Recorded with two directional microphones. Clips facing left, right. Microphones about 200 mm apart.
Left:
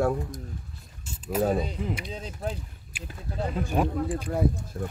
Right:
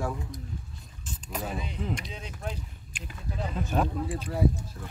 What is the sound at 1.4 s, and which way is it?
Speech, 40° left (ahead or behind).